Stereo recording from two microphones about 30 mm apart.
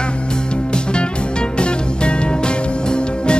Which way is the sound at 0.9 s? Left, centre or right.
Left.